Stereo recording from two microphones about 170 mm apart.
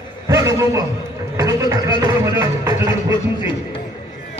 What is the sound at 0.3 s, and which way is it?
A man's voice, 20° right (ahead or behind).